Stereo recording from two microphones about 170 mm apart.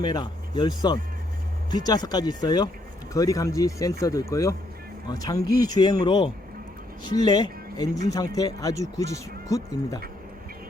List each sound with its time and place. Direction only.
0.0 s speech: 25° left (ahead or behind)